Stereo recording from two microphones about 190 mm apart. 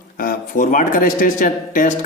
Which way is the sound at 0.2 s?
50° left (ahead or behind).